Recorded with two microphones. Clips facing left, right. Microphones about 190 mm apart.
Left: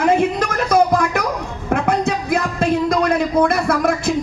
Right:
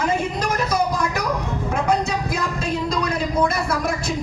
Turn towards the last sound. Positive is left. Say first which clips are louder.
# left 6 dB
turn(degrees=55)  # may be behind; listen again after turning